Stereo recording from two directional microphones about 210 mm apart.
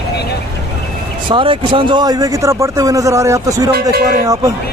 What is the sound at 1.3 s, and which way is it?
Speech, 25° right (ahead or behind).